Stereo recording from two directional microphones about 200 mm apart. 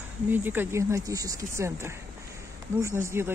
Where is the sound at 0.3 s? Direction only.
10° right (ahead or behind).